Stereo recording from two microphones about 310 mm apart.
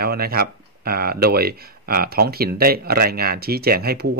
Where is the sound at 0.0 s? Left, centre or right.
Right.